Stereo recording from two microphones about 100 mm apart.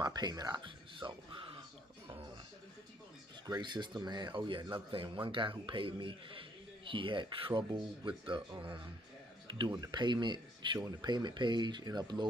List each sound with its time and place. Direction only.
0.0 s speech: 45° right (ahead or behind)
0.7 s a sound: 55° right (ahead or behind)
3.6 s speech: 50° right (ahead or behind)
9.8 s speech: 50° right (ahead or behind)